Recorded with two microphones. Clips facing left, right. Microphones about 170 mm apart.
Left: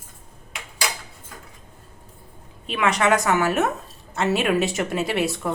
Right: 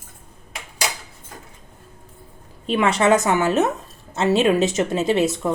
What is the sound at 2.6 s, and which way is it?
A woman's voice, 30° right (ahead or behind).